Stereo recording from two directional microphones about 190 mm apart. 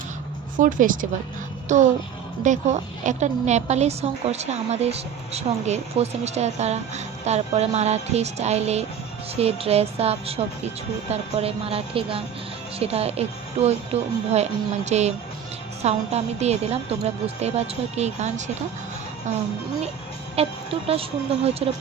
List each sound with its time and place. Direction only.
0.6 s a woman's voice: 45° right (ahead or behind)
20.3 s a woman's voice: 30° right (ahead or behind)